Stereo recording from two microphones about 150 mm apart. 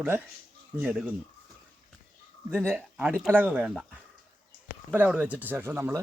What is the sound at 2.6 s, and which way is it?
Speech, 10° right (ahead or behind).